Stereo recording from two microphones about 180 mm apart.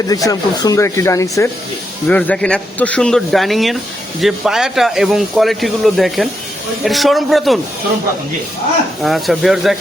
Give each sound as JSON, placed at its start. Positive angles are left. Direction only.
{"t": 0.1, "sound": "speech", "side_deg": 20}
{"t": 9.0, "sound": "speech", "side_deg": 0}